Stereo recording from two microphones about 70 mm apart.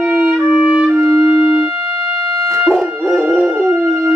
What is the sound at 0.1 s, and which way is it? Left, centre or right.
Music, centre.